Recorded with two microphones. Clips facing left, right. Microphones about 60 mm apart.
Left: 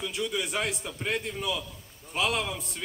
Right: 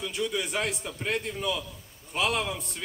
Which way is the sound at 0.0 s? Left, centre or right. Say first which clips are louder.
Right 1 dB; centre.